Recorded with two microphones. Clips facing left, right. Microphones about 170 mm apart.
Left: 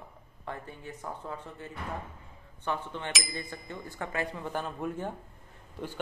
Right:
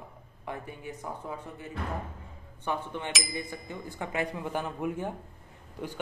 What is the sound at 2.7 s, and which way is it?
Speech, 15° right (ahead or behind).